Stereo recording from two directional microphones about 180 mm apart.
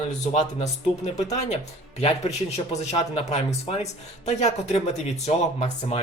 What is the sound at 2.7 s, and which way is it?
Speech, 35° left (ahead or behind).